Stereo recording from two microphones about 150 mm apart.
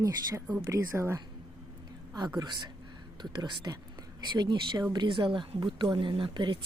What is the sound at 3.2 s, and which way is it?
A woman's voice, 30° right (ahead or behind).